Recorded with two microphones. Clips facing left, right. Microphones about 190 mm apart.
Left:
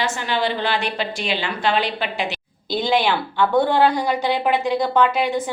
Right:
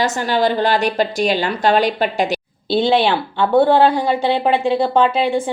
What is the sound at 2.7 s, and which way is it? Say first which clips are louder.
A woman's voice: right 5 dB; 30° right (ahead or behind).